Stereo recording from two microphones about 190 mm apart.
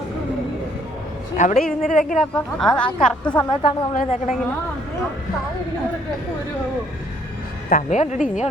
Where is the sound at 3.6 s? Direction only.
35° left (ahead or behind).